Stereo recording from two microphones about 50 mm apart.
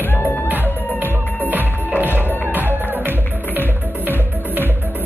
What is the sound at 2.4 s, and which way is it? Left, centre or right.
Music, right.